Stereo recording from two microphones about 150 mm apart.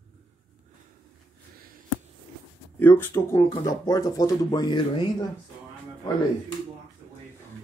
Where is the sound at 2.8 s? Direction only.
20° left (ahead or behind).